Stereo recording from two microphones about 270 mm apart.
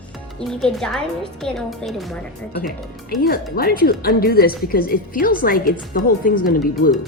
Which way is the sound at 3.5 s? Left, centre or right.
Left.